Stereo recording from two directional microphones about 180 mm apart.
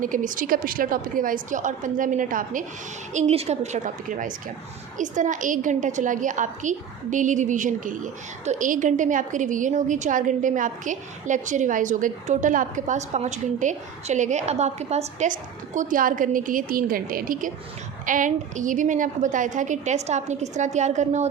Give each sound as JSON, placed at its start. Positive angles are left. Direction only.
{"t": 0.0, "sound": "a woman's voice", "side_deg": -45}